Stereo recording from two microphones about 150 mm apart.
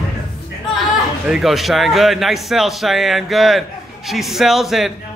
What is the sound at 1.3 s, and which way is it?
A man's voice, centre (ahead or behind).